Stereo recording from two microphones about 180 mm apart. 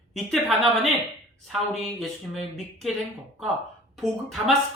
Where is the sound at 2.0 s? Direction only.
Centre (ahead or behind).